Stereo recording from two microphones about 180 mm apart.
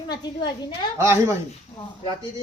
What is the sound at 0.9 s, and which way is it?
Speech, 15° right (ahead or behind).